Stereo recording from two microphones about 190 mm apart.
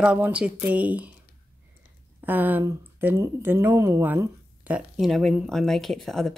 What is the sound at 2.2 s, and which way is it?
Speech, 10° right (ahead or behind).